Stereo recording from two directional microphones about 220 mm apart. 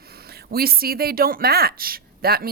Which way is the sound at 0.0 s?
45° right (ahead or behind).